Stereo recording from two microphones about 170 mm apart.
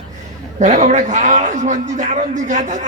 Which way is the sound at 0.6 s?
45° right (ahead or behind).